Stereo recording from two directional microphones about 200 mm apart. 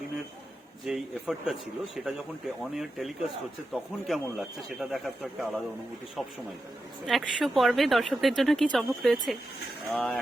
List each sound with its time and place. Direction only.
0.9 s speech: centre (ahead or behind)